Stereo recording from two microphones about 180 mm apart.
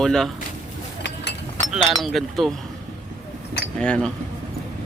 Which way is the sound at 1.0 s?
75° left (ahead or behind).